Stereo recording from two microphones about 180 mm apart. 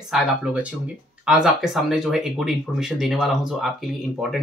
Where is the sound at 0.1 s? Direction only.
5° right (ahead or behind).